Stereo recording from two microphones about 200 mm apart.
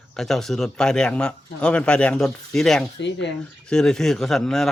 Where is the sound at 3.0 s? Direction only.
60° left (ahead or behind).